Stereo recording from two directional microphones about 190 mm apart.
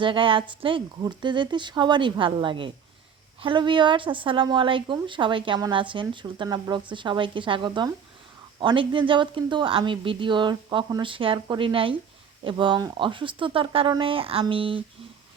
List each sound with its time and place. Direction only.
0.0 s speech: 25° right (ahead or behind)